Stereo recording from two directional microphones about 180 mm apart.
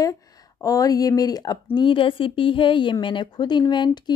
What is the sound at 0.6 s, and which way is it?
Speech, 20° left (ahead or behind).